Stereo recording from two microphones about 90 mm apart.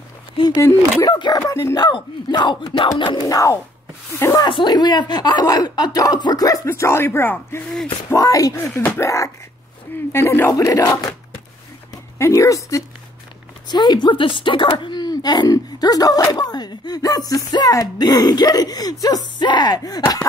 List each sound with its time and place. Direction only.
0.6 s speech: 35° left (ahead or behind)
1.1 s a woman's voice: 50° left (ahead or behind)
1.5 s speech: 30° left (ahead or behind)
1.8 s a woman's voice: 55° left (ahead or behind)
3.0 s music: 55° left (ahead or behind)
3.3 s speech: 40° left (ahead or behind)
4.5 s a woman's voice: 60° left (ahead or behind); by 6.7 s 40° left (ahead or behind)
6.7 s speech: 30° left (ahead or behind)
8.1 s speech: 40° left (ahead or behind)
8.8 s speech: 30° left (ahead or behind)
12.2 s speech: 35° left (ahead or behind)
13.7 s a woman's voice: 55° left (ahead or behind)